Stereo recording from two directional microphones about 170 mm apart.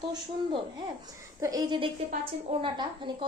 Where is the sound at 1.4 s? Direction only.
20° right (ahead or behind).